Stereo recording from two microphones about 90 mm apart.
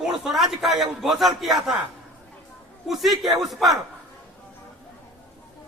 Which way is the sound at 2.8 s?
Centre (ahead or behind).